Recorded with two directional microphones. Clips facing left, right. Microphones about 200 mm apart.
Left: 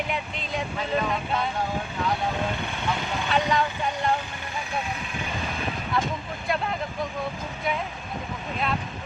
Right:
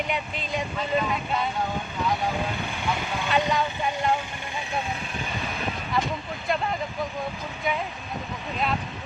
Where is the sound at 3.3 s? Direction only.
Centre (ahead or behind).